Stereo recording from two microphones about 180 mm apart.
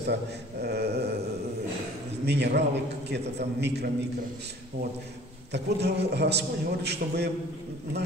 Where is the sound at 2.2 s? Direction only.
70° right (ahead or behind).